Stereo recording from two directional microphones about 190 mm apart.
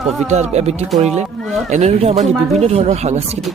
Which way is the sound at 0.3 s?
35° right (ahead or behind).